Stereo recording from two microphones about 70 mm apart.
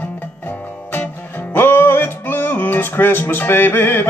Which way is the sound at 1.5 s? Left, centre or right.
Left.